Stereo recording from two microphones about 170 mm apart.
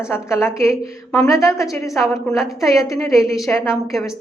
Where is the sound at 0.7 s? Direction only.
5° left (ahead or behind).